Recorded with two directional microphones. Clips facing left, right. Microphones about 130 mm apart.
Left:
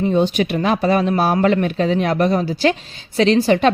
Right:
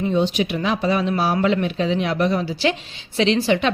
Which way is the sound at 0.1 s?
50° left (ahead or behind).